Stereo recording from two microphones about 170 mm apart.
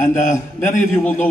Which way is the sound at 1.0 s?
10° left (ahead or behind).